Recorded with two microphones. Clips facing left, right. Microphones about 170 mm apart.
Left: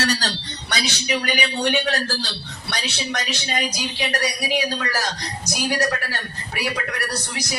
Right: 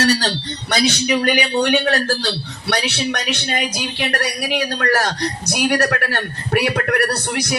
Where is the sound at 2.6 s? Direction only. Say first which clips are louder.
Right 7 dB; 65° right (ahead or behind).